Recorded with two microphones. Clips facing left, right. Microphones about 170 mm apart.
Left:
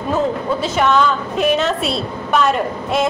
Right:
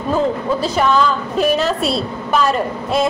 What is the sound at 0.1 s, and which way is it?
A woman's voice, centre (ahead or behind).